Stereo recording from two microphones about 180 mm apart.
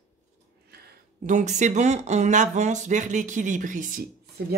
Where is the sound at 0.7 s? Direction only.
60° right (ahead or behind).